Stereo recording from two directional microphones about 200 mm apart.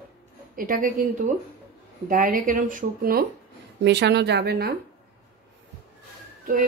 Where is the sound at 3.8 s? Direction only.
60° right (ahead or behind).